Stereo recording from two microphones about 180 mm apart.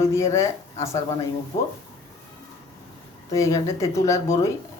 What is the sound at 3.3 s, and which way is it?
Speech, 20° left (ahead or behind).